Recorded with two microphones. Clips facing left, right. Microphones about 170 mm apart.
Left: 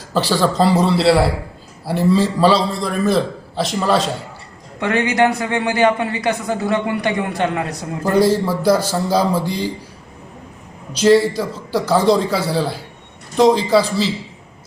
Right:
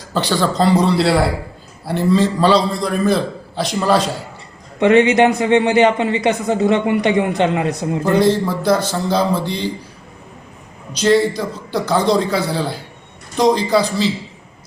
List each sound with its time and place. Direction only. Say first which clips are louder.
0.1 s a man's voice: left 1 dB; 5° left (ahead or behind)
4.8 s a man's voice: right 5 dB; 20° right (ahead or behind)
8.1 s speech: left 1 dB; 10° left (ahead or behind)
10.9 s a man's voice: left 2 dB; 5° left (ahead or behind)